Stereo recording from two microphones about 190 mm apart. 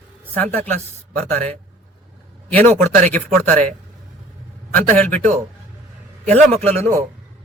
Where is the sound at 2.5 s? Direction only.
10° left (ahead or behind).